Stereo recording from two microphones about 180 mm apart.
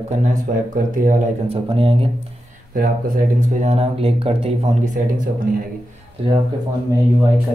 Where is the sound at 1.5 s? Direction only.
30° right (ahead or behind).